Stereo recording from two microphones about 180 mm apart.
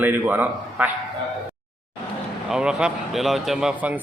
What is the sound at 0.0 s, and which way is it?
Speech, 10° right (ahead or behind).